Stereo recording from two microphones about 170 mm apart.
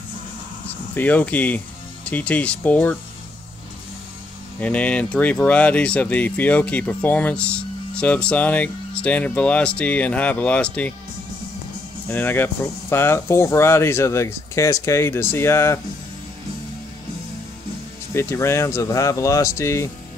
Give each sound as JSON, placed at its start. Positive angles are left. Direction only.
{"t": 0.9, "sound": "speech", "side_deg": 10}
{"t": 4.6, "sound": "speech", "side_deg": 10}
{"t": 12.1, "sound": "speech", "side_deg": 10}
{"t": 18.1, "sound": "speech", "side_deg": 15}